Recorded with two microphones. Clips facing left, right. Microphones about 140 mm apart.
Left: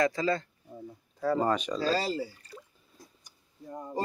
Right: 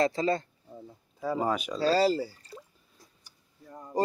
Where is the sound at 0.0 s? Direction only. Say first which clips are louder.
Right 1 dB; 25° right (ahead or behind).